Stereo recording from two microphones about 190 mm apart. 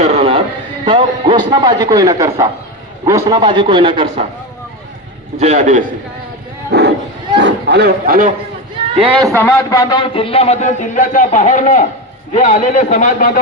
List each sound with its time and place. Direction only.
0.0 s a sound: 30° right (ahead or behind)
0.9 s a man's voice: 25° right (ahead or behind)
5.4 s a man's voice: 40° right (ahead or behind)
6.7 s a sound: 60° right (ahead or behind)
7.3 s a man's voice: 65° right (ahead or behind); by 8.3 s 50° right (ahead or behind)
9.0 s a man's voice: 25° right (ahead or behind)
9.4 s speech: 15° left (ahead or behind); by 13.4 s 45° left (ahead or behind)